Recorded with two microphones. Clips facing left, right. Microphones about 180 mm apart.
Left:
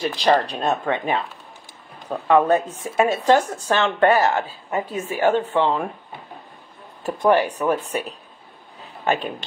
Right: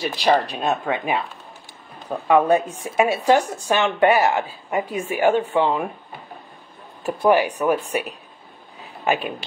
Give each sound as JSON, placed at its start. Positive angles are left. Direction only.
{"t": 0.0, "sound": "speech", "side_deg": -10}
{"t": 7.0, "sound": "speech", "side_deg": -10}
{"t": 8.8, "sound": "a sound", "side_deg": -10}